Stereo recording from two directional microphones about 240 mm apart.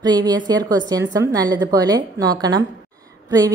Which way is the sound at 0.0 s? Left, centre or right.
Centre.